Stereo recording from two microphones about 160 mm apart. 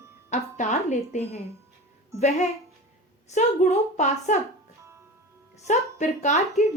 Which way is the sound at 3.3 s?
45° left (ahead or behind).